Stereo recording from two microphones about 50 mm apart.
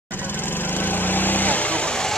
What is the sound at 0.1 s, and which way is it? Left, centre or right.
Vehicle, left.